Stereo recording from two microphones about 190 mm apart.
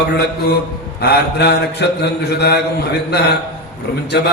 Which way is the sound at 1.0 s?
60° left (ahead or behind).